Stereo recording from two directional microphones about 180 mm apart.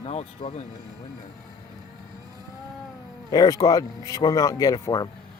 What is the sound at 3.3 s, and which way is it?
Speech, 20° left (ahead or behind).